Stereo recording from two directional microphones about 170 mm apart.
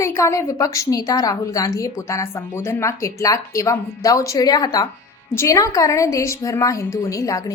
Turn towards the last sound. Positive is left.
turn(degrees=20)  # may be behind; listen again after turning